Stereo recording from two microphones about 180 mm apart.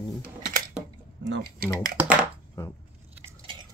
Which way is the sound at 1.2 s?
85° right.